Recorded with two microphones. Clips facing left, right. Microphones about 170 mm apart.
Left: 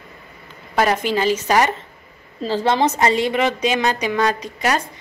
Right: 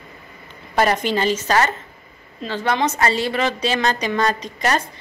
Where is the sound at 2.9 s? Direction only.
20° left (ahead or behind).